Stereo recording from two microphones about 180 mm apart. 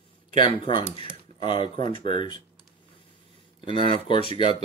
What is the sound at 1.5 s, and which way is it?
Speech, 40° right (ahead or behind).